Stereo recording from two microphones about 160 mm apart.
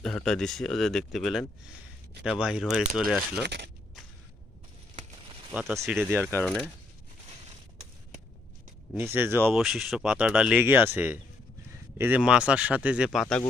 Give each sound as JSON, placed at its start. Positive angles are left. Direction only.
{"t": 0.0, "sound": "speech", "side_deg": 5}
{"t": 3.4, "sound": "speech", "side_deg": -90}
{"t": 5.5, "sound": "speech", "side_deg": -5}
{"t": 6.1, "sound": "speech", "side_deg": -15}
{"t": 6.4, "sound": "speech", "side_deg": 0}
{"t": 8.9, "sound": "speech", "side_deg": -15}
{"t": 9.5, "sound": "speech", "side_deg": 0}